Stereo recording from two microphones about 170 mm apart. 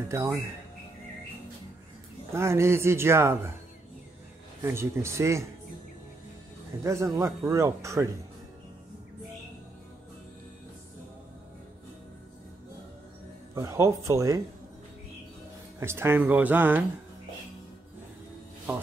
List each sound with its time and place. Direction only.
0.1 s speech: 15° right (ahead or behind)
2.3 s speech: 15° right (ahead or behind)
4.6 s speech: 15° right (ahead or behind)
6.8 s speech: 15° right (ahead or behind)
13.6 s speech: 15° right (ahead or behind)
15.8 s speech: 15° right (ahead or behind)